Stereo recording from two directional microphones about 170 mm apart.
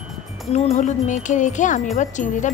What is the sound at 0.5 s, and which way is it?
A woman's voice, 45° left (ahead or behind).